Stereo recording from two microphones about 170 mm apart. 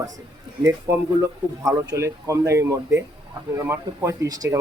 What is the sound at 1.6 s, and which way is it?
Speech, 15° right (ahead or behind).